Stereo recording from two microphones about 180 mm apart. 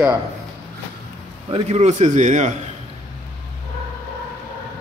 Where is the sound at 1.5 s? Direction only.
35° right (ahead or behind).